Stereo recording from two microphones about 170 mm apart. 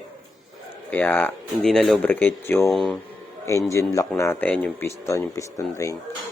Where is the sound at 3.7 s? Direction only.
20° left (ahead or behind).